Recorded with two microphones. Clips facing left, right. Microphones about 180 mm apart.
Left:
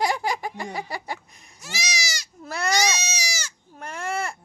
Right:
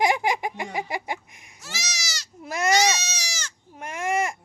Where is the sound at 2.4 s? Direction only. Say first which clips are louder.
Right 3 dB; 10° right (ahead or behind).